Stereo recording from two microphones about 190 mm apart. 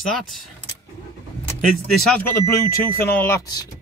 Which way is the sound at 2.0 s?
5° left (ahead or behind).